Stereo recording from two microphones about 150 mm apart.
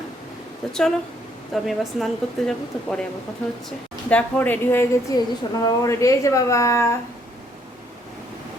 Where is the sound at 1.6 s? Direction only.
Centre (ahead or behind).